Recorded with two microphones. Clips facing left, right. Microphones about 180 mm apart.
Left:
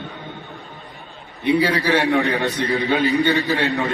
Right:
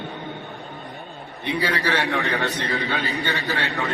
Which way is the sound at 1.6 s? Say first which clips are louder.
Left 5 dB; 10° left (ahead or behind).